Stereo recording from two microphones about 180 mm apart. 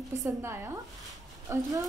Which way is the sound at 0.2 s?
15° right (ahead or behind).